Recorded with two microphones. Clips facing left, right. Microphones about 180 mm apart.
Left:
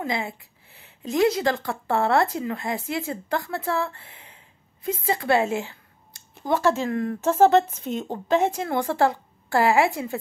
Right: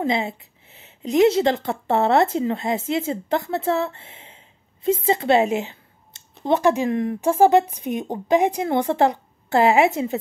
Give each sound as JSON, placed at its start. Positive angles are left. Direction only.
{"t": 0.0, "sound": "a woman's voice", "side_deg": -25}